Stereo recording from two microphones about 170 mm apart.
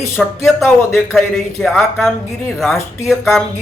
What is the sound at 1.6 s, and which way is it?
Speech, centre (ahead or behind).